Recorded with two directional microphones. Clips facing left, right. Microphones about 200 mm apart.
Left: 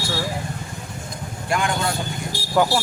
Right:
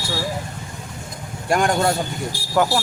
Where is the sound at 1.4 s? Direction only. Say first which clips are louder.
Right 5 dB; 45° right (ahead or behind).